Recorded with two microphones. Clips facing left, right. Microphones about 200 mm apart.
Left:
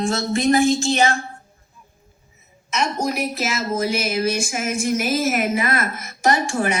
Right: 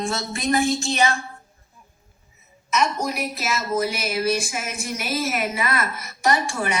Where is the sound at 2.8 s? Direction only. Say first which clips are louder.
Left 1 dB; 30° left (ahead or behind).